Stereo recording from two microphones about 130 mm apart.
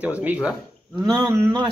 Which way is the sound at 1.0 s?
35° right (ahead or behind).